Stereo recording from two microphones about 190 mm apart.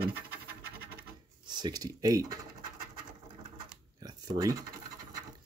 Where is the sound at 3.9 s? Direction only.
20° right (ahead or behind).